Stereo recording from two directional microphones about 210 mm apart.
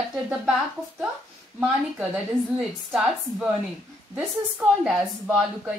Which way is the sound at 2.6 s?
Centre (ahead or behind).